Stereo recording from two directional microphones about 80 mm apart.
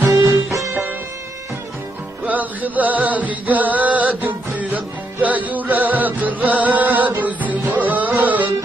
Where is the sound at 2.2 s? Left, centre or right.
Right.